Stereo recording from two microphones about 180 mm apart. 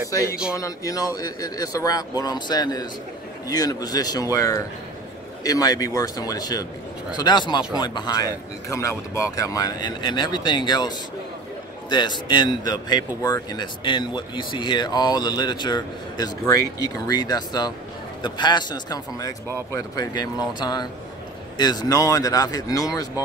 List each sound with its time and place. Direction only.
0.6 s speech: 20° left (ahead or behind)